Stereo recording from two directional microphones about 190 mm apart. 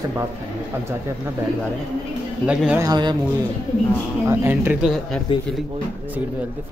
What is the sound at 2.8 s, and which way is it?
Music, 20° right (ahead or behind).